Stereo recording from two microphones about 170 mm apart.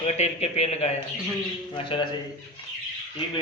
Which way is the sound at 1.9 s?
30° left (ahead or behind).